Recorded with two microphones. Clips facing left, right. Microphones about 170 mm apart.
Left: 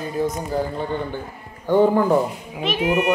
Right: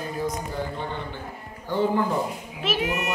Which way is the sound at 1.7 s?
50° left (ahead or behind).